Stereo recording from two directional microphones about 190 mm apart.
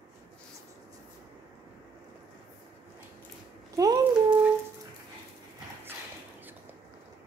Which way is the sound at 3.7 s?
20° right (ahead or behind).